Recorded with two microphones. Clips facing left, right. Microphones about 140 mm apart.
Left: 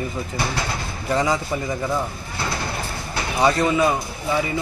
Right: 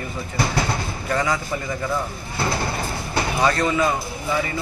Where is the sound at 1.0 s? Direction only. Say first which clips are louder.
Left 2 dB; 20° left (ahead or behind).